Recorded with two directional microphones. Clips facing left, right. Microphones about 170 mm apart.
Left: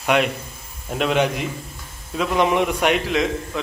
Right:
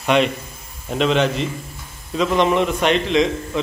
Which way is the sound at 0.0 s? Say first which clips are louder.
Right 2 dB; 10° left (ahead or behind).